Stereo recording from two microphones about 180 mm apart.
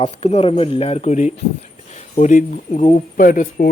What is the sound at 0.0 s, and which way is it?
Speech, 35° left (ahead or behind).